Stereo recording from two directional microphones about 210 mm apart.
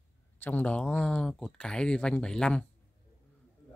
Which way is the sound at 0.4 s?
10° left (ahead or behind).